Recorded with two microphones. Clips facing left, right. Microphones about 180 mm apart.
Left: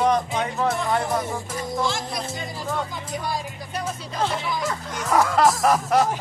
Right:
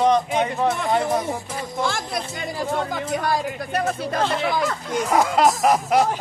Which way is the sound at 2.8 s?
65° right (ahead or behind).